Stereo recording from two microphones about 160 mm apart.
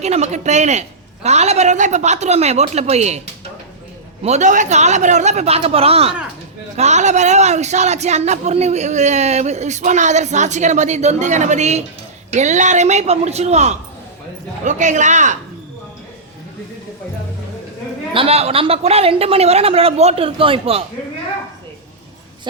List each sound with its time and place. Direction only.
0.0 s speech: 45° right (ahead or behind)
4.2 s speech: 45° right (ahead or behind)
18.1 s speech: 35° right (ahead or behind)